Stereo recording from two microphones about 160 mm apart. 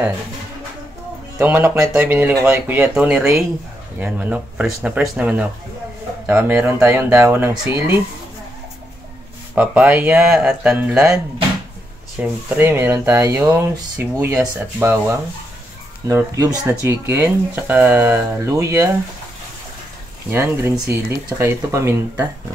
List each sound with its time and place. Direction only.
1.4 s speech: 10° right (ahead or behind)
9.6 s speech: 5° right (ahead or behind)
12.2 s speech: 10° right (ahead or behind)
20.2 s speech: 15° right (ahead or behind)